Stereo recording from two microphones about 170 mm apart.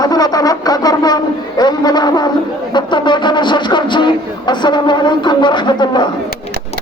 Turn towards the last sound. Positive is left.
turn(degrees=25)  # may be behind; listen again after turning